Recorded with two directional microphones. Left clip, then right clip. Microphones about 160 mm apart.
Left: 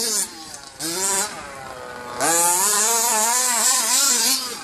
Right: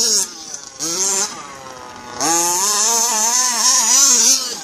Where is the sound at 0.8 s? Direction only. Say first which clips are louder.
Right 4 dB; 5° left (ahead or behind).